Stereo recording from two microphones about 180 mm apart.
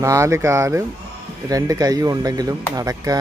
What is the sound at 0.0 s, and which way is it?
Speech, 15° right (ahead or behind).